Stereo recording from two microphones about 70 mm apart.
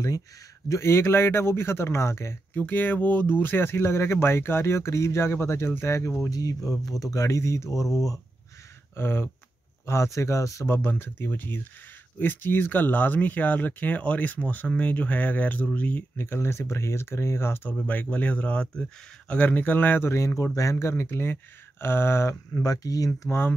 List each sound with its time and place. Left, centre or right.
0.7 s speech: left
2.5 s speech: left
6.3 s speech: left
8.9 s speech: left
9.8 s speech: left
10.7 s speech: left
17.7 s speech: left
22.6 s speech: left